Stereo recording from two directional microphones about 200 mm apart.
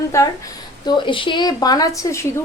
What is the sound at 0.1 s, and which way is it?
A woman's voice, 15° left (ahead or behind).